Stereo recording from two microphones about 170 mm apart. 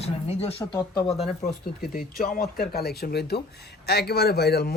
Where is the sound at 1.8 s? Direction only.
60° left (ahead or behind).